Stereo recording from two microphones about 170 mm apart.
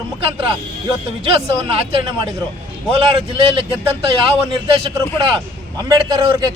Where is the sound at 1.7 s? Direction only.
30° right (ahead or behind).